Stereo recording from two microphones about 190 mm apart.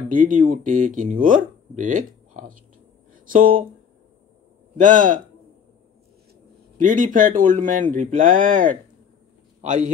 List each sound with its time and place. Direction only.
0.1 s speech: 45° right (ahead or behind)
3.1 s a sound: 45° right (ahead or behind)
4.7 s speech: 45° right (ahead or behind)
6.8 s a man's voice: 45° right (ahead or behind)